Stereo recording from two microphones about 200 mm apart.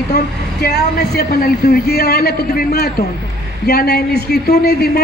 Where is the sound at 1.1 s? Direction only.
50° left (ahead or behind).